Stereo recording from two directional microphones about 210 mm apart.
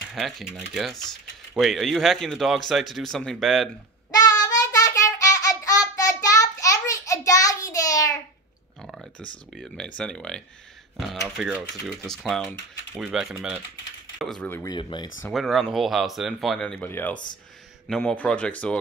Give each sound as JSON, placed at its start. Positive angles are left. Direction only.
{"t": 0.1, "sound": "speech", "side_deg": 0}
{"t": 4.1, "sound": "child singing", "side_deg": 20}
{"t": 8.8, "sound": "a sound", "side_deg": 0}
{"t": 9.6, "sound": "speech", "side_deg": 5}
{"t": 15.2, "sound": "speech", "side_deg": 0}